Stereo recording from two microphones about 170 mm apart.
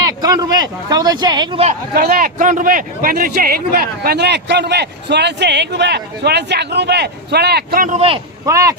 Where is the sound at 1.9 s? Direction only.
65° right (ahead or behind).